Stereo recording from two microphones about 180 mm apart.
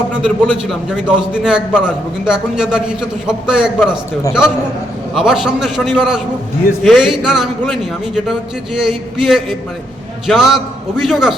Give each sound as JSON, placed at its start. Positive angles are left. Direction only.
{"t": 0.2, "sound": "a man's voice", "side_deg": -5}